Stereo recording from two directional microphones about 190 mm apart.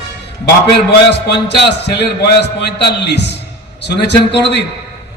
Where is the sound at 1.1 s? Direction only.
60° left (ahead or behind).